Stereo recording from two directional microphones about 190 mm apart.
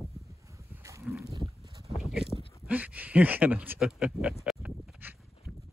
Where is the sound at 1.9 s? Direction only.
Centre (ahead or behind).